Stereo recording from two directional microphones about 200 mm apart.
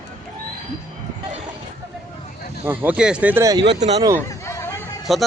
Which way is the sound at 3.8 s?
35° right (ahead or behind).